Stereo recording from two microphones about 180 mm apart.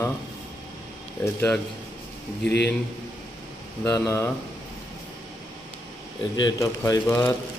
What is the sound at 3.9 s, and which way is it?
Speech, 20° left (ahead or behind).